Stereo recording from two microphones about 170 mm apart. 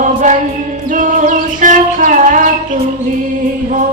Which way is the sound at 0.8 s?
50° right (ahead or behind).